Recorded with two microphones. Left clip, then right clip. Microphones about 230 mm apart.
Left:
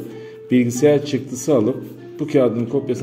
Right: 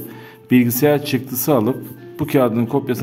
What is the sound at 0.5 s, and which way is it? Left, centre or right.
Speech, right.